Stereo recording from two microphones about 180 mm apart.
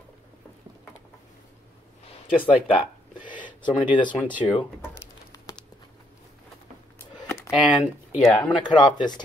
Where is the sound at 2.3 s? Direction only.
30° left (ahead or behind).